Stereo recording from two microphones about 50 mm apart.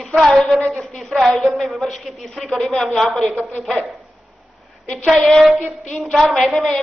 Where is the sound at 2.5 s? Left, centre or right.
Centre.